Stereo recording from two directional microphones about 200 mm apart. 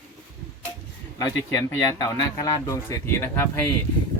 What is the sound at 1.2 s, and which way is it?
Speech, 15° left (ahead or behind).